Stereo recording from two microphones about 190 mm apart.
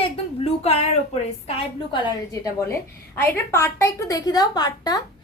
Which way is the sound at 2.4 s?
15° left (ahead or behind).